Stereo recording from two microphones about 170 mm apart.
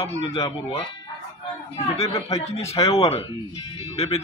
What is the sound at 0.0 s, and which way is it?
Speech, 35° left (ahead or behind).